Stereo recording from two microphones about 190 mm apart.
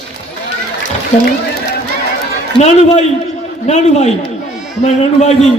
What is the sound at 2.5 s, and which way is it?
A man's voice, 35° left (ahead or behind).